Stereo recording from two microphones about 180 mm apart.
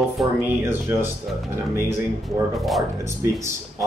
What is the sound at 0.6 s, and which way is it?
Speech, 15° right (ahead or behind).